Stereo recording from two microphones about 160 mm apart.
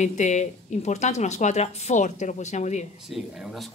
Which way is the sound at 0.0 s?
50° left (ahead or behind).